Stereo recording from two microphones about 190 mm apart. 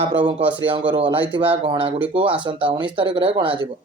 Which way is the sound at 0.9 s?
25° right (ahead or behind).